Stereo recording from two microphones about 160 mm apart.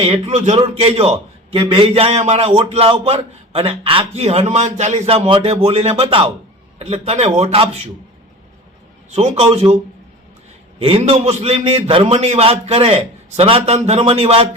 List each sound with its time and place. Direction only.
0.0 s a man's voice: 40° right (ahead or behind)
9.0 s a man's voice: 45° right (ahead or behind)
10.8 s a man's voice: 35° right (ahead or behind)